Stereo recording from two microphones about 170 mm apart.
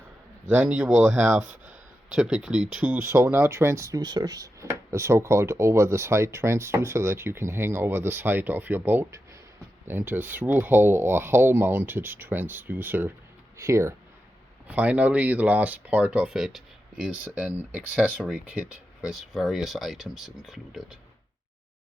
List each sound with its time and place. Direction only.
0.4 s speech: 5° right (ahead or behind)